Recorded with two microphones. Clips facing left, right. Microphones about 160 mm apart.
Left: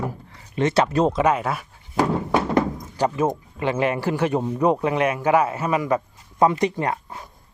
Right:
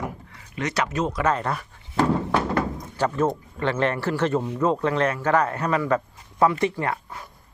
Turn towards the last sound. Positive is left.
turn(degrees=20)  # may be behind; listen again after turning